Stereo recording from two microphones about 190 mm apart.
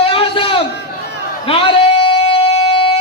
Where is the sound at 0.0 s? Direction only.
30° left (ahead or behind).